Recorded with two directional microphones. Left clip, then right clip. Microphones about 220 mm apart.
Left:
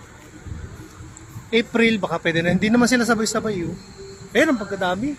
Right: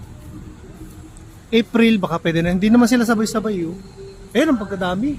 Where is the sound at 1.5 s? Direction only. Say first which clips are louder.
Right 2 dB; 10° right (ahead or behind).